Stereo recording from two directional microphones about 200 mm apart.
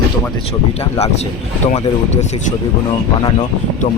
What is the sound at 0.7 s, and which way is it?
Speech, 30° left (ahead or behind).